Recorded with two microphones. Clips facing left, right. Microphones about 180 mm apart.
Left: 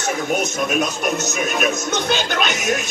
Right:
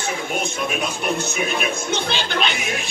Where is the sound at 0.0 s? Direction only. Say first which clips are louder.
Left 4 dB; 40° left (ahead or behind).